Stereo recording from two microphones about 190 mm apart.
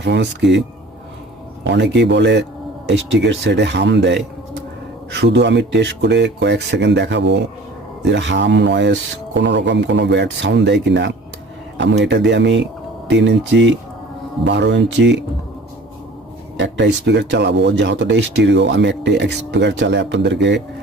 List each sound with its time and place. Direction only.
0.0 s speech: 65° right (ahead or behind)
1.7 s speech: 65° right (ahead or behind)
16.6 s speech: 65° right (ahead or behind)